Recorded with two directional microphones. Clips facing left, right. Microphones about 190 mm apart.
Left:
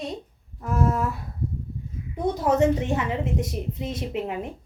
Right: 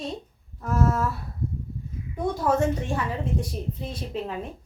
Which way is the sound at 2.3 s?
20° left (ahead or behind).